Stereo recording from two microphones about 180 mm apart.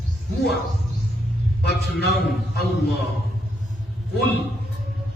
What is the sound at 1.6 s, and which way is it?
A man's voice, 65° left (ahead or behind).